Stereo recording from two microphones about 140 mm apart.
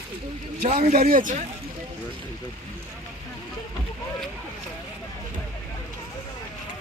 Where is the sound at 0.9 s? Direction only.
85° right.